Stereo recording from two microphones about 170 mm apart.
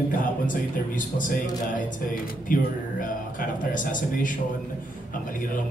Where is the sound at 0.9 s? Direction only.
50° left (ahead or behind).